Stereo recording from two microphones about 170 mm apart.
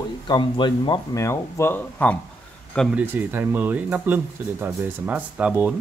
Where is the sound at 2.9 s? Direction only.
10° right (ahead or behind).